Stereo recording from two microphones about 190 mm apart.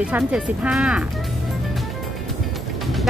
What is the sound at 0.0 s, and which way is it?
Speech, 5° right (ahead or behind).